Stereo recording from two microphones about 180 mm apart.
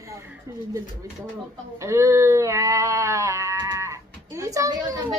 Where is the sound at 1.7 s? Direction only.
15° right (ahead or behind).